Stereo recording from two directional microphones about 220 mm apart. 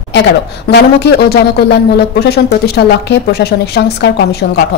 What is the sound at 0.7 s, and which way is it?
Speech, 45° left (ahead or behind).